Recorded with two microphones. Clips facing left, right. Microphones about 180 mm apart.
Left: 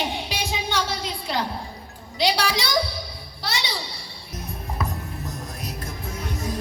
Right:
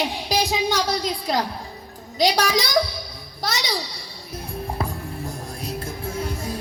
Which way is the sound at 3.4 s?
40° right (ahead or behind).